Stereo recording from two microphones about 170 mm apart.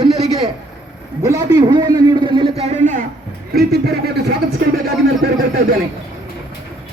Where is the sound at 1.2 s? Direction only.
20° right (ahead or behind); by 3.1 s 50° right (ahead or behind).